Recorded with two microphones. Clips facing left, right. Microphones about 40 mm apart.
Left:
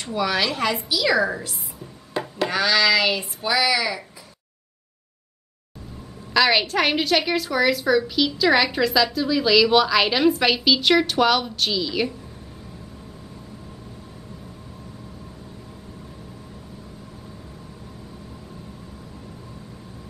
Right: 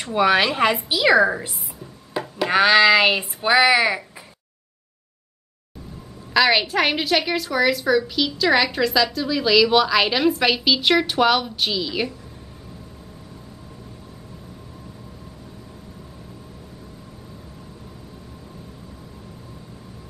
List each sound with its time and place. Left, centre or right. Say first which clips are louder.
0.1 s child singing: right 5 dB; right
2.1 s music: even; centre
2.5 s child singing: right 5 dB; right
6.3 s a woman's voice: right 1 dB; centre